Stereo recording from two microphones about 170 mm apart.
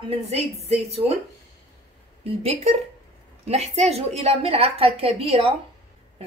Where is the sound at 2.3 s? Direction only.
35° right (ahead or behind).